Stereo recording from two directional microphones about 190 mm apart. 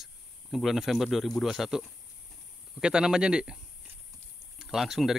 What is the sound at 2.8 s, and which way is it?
Speech, 5° right (ahead or behind).